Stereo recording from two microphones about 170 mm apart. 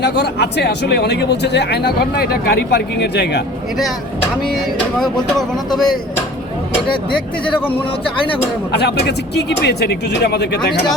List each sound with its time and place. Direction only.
0.0 s a man's voice: 80° left
4.2 s speech: centre (ahead or behind)
8.7 s a man's voice: 75° left (ahead or behind)